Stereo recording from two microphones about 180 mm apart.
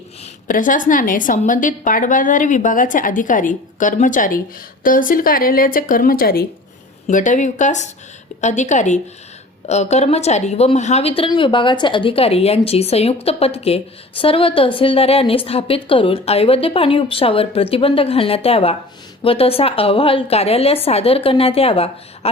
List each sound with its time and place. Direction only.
0.4 s a woman's voice: 45° left (ahead or behind)
7.1 s a woman's voice: 45° left (ahead or behind)